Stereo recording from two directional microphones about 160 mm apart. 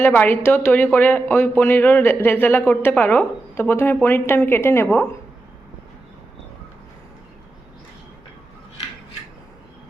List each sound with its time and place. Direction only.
0.0 s speech: 10° left (ahead or behind)